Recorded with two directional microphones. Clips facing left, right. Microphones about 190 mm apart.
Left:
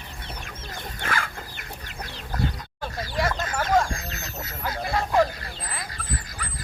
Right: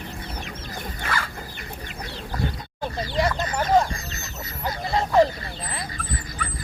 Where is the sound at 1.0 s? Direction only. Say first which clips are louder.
Even; 55° left (ahead or behind).